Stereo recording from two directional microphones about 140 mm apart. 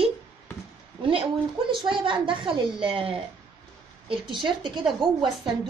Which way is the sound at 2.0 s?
35° right (ahead or behind).